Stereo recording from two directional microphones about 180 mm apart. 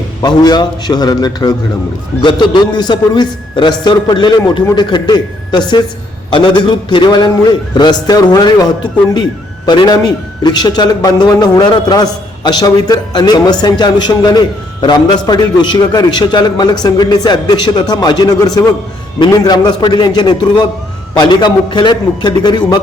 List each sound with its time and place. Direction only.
0.2 s speech: 25° left (ahead or behind)